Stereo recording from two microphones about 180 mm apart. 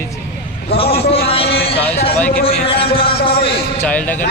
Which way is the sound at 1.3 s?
30° left (ahead or behind).